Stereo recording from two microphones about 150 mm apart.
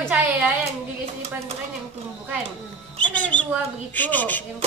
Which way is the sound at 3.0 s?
10° left (ahead or behind).